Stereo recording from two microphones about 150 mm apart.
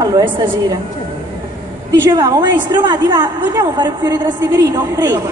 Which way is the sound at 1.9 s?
25° right (ahead or behind).